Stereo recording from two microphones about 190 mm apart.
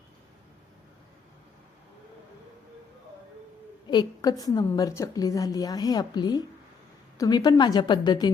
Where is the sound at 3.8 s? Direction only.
20° left (ahead or behind).